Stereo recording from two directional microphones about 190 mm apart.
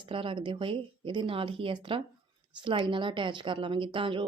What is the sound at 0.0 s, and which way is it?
A woman's voice, 25° right (ahead or behind).